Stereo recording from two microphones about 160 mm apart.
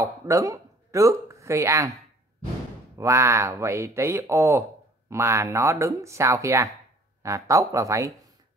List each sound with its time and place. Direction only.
0.0 s speech: 20° right (ahead or behind)
3.0 s speech: 15° right (ahead or behind)